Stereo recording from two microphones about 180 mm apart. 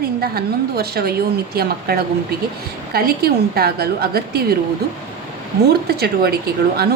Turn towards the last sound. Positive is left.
turn(degrees=-60)  # may be behind; listen again after turning